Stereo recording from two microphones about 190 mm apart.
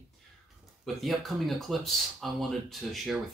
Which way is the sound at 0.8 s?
Centre (ahead or behind).